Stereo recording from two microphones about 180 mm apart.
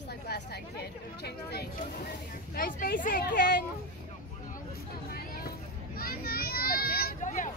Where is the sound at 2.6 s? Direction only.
50° left (ahead or behind).